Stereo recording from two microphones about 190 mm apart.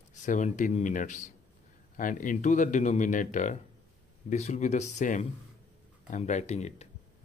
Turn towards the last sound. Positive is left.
turn(degrees=35)  # may be behind; listen again after turning